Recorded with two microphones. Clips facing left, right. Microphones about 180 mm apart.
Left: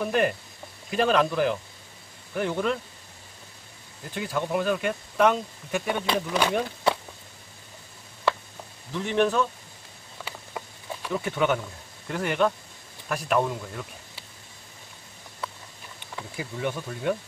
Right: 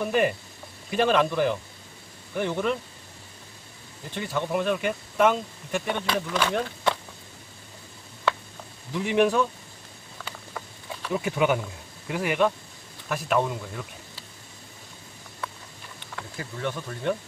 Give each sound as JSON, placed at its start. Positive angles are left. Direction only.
{"t": 0.0, "sound": "speech", "side_deg": 0}
{"t": 4.1, "sound": "speech", "side_deg": 5}
{"t": 6.0, "sound": "speech", "side_deg": 15}
{"t": 8.9, "sound": "speech", "side_deg": -10}
{"t": 10.2, "sound": "a sound", "side_deg": 15}
{"t": 11.1, "sound": "speech", "side_deg": -15}
{"t": 16.2, "sound": "speech", "side_deg": 10}